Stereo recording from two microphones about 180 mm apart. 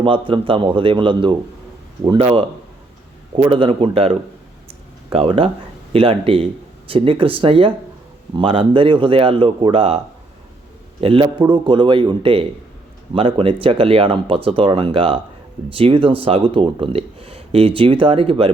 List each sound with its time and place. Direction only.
0.0 s speech: 30° right (ahead or behind)
11.0 s speech: 30° right (ahead or behind)